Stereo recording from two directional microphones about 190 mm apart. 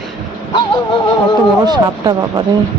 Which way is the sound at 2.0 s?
20° right (ahead or behind).